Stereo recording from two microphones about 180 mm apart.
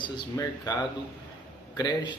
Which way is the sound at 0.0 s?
20° left (ahead or behind).